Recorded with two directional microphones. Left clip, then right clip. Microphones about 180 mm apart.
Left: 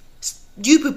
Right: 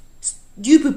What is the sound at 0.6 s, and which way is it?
Speech, 20° right (ahead or behind).